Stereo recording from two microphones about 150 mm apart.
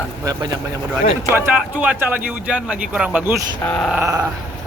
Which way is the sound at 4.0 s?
20° right (ahead or behind).